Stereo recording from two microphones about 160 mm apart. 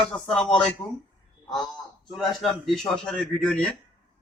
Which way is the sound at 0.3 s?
5° left (ahead or behind).